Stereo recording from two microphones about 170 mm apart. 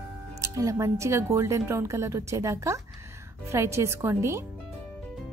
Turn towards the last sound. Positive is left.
turn(degrees=-15)  # may be behind; listen again after turning